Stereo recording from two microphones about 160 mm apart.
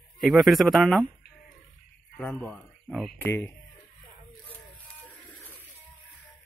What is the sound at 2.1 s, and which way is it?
Speech, 10° left (ahead or behind).